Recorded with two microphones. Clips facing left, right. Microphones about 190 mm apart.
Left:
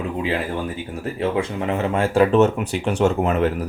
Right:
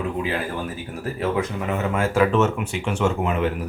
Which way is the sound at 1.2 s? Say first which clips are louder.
Left 2 dB; 30° left (ahead or behind).